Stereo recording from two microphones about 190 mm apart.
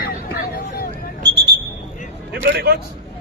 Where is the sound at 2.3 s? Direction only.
55° right (ahead or behind).